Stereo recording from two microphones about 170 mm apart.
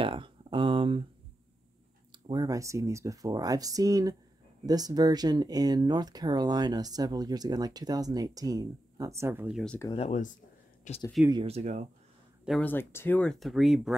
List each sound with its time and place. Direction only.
0.0 s a sound: 30° right (ahead or behind)
2.2 s speech: 20° right (ahead or behind)
9.9 s speech: 40° left (ahead or behind)
11.4 s speech: 40° right (ahead or behind)
12.4 s speech: 5° left (ahead or behind)